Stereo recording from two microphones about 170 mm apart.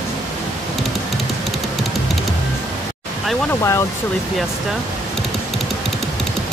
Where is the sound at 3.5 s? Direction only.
15° left (ahead or behind).